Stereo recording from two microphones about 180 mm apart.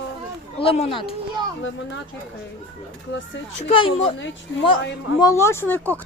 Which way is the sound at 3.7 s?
30° left (ahead or behind).